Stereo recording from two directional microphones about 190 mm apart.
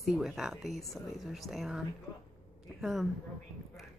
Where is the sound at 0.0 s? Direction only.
Centre (ahead or behind).